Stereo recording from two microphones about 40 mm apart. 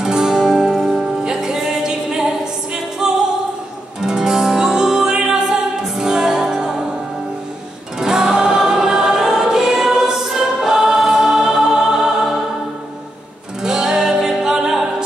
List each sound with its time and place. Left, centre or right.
0.0 s music: centre
8.0 s music: centre
13.6 s music: centre